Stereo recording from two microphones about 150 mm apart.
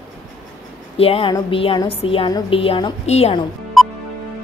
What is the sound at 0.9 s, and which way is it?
A woman's voice, 40° left (ahead or behind).